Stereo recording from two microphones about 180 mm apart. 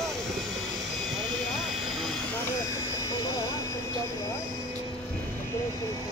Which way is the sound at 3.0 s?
20° left (ahead or behind).